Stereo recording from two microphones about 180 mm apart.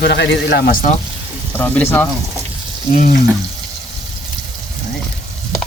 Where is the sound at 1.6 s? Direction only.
10° left (ahead or behind).